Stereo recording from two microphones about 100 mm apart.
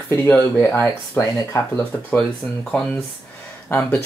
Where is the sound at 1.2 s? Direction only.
35° left (ahead or behind).